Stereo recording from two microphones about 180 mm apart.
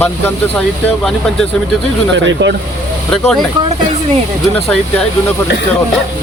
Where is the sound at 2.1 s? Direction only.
85° right.